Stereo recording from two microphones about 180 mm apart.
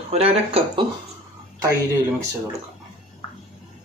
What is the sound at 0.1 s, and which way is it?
Speech, 35° right (ahead or behind).